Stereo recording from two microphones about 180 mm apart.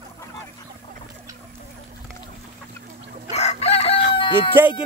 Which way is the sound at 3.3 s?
35° left (ahead or behind).